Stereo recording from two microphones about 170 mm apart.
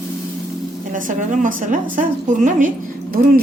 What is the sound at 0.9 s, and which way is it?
A woman's voice, 50° right (ahead or behind).